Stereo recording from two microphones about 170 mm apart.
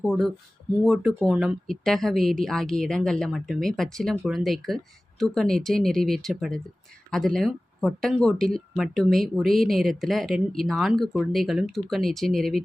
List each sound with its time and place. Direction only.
0.9 s speech: centre (ahead or behind)